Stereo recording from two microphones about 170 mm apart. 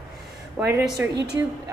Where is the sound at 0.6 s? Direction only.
15° right (ahead or behind).